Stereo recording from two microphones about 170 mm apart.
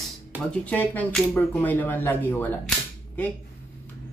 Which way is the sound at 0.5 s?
10° left (ahead or behind).